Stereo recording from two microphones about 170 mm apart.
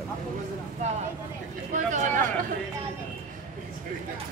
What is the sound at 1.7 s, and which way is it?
Speech, 45° right (ahead or behind).